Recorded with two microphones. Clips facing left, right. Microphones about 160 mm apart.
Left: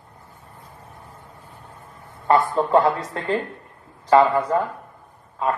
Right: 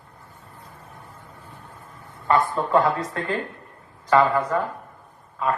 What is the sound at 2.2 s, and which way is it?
A woman's voice, 30° left (ahead or behind).